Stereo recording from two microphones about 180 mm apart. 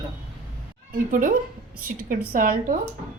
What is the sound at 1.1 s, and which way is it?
A woman's voice, 50° right (ahead or behind).